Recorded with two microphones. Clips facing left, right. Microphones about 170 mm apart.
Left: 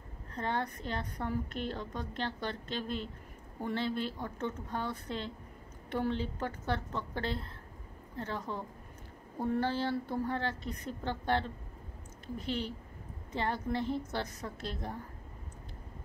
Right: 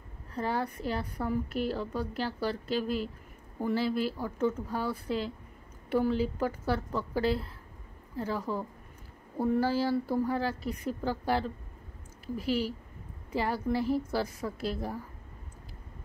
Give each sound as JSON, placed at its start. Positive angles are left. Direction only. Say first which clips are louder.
{"t": 0.3, "sound": "a woman's voice", "louder": "right 3 dB", "side_deg": -10}